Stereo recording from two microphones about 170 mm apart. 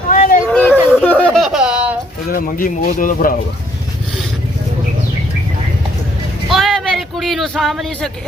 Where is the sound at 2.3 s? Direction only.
55° left (ahead or behind).